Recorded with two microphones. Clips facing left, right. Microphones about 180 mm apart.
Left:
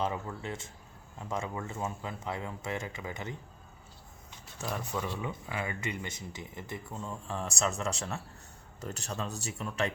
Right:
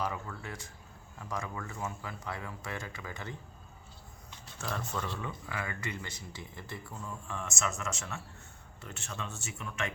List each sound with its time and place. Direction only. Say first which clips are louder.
0.0 s speech: left 3 dB; 25° left (ahead or behind)
4.6 s speech: left 2 dB; 15° left (ahead or behind); by 9.9 s 35° left (ahead or behind)